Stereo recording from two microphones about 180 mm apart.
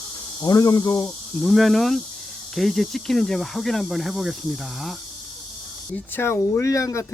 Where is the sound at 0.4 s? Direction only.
20° left (ahead or behind).